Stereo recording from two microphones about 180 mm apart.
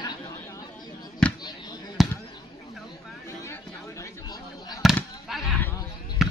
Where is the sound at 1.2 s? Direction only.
5° left (ahead or behind).